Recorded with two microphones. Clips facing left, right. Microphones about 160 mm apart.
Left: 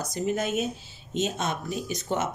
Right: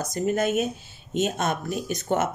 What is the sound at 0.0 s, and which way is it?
Speech, 50° right (ahead or behind).